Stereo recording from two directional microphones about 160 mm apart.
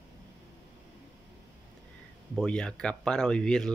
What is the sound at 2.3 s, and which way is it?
Speech, 5° left (ahead or behind).